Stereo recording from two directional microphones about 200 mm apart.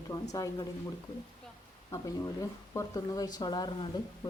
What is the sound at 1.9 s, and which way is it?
Speech, 15° left (ahead or behind).